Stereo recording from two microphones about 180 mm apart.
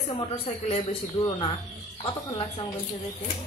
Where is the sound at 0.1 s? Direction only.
35° left (ahead or behind).